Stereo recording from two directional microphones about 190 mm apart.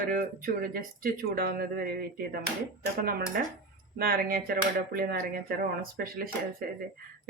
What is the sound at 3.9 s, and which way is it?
Speech, 50° right (ahead or behind).